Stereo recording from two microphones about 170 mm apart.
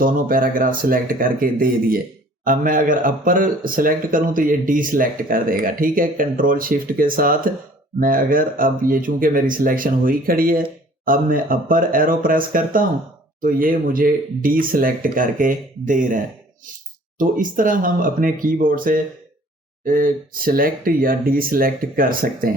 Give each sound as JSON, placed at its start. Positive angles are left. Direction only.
{"t": 0.0, "sound": "speech", "side_deg": -55}